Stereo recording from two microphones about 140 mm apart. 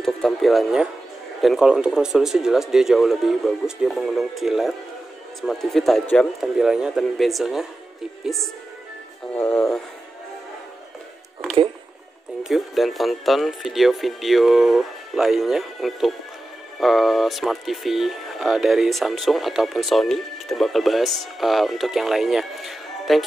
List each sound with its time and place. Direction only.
0.0 s music: centre (ahead or behind)
1.4 s speech: centre (ahead or behind)
9.3 s speech: 15° left (ahead or behind)
12.4 s speech: centre (ahead or behind)